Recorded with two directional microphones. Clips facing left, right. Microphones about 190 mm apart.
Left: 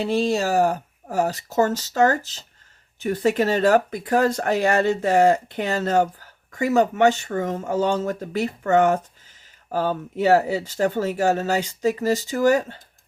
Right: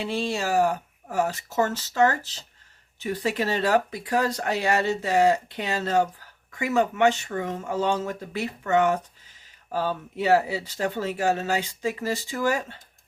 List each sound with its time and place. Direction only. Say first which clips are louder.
0.0 s speech: left 6 dB; 40° left (ahead or behind)